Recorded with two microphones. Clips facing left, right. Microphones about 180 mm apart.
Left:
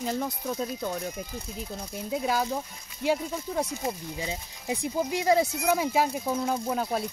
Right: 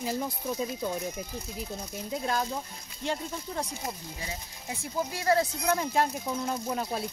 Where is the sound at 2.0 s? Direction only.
5° left (ahead or behind).